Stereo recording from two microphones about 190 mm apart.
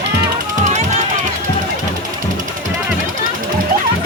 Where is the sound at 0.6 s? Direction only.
40° right (ahead or behind).